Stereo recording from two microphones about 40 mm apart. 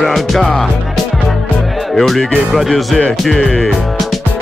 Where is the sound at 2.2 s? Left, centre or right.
Centre.